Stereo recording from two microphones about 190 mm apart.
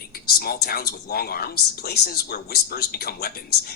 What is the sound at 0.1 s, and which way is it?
A woman's voice, 50° left (ahead or behind).